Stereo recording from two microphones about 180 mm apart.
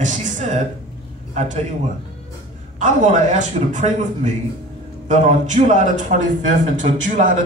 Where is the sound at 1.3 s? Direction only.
40° right (ahead or behind).